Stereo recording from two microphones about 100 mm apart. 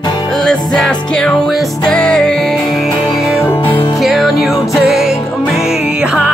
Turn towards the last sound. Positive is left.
turn(degrees=-10)  # may be behind; listen again after turning